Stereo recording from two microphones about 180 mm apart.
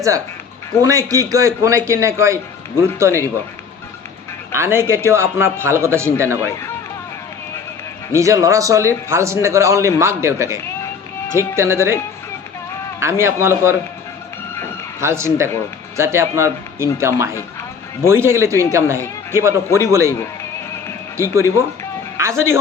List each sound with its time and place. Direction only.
0.8 s a man's voice: 20° right (ahead or behind)
4.5 s a man's voice: 15° right (ahead or behind)
8.1 s a man's voice: 15° right (ahead or behind)
13.0 s a man's voice: 15° right (ahead or behind)
15.0 s a man's voice: 15° right (ahead or behind)
22.2 s a man's voice: 15° right (ahead or behind)